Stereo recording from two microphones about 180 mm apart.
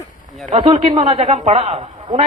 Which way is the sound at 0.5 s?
30° right (ahead or behind).